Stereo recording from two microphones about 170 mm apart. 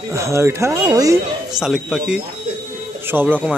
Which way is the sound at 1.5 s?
5° right (ahead or behind).